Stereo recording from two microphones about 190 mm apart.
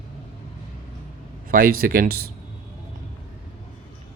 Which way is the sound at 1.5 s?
50° right (ahead or behind).